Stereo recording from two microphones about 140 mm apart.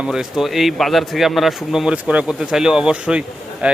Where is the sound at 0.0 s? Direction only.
5° right (ahead or behind).